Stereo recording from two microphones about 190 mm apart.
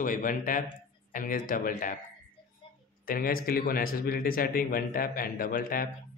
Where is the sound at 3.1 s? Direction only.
50° left (ahead or behind).